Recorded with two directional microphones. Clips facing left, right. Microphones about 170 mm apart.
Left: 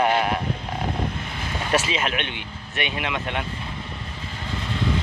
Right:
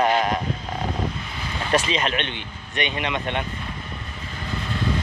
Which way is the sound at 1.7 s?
5° left (ahead or behind).